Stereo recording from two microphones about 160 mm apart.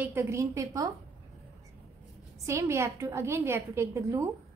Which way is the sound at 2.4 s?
20° right (ahead or behind).